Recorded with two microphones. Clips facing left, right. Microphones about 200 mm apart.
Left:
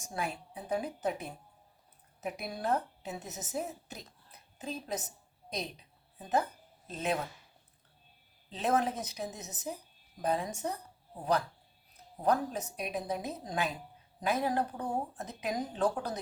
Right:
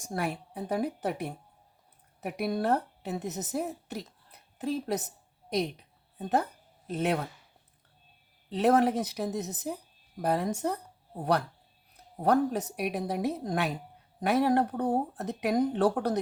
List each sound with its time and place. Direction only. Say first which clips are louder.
0.1 s a woman's voice: right 5 dB; 65° right (ahead or behind)
8.4 s a woman's voice: right 7 dB; 65° right (ahead or behind)
12.2 s a woman's voice: right 5 dB; 65° right (ahead or behind)